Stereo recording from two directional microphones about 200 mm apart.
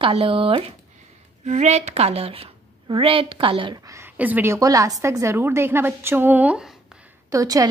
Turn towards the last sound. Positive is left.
turn(degrees=-15)  # may be behind; listen again after turning